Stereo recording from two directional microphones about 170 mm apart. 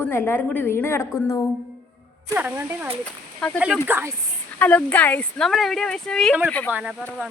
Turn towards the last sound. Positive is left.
turn(degrees=-10)  # may be behind; listen again after turning